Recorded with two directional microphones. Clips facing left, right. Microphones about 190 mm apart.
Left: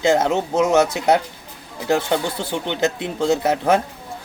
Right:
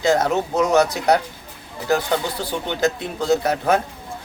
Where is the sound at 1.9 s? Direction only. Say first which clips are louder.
Left 1 dB; 25° left (ahead or behind).